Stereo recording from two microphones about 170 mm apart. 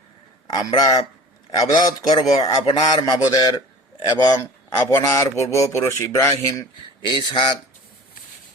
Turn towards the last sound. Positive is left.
turn(degrees=30)  # may be behind; listen again after turning